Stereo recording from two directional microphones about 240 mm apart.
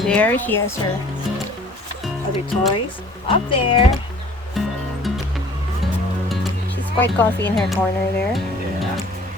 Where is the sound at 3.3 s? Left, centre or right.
Left.